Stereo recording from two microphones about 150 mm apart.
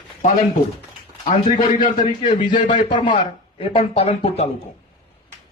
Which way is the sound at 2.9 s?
30° left (ahead or behind).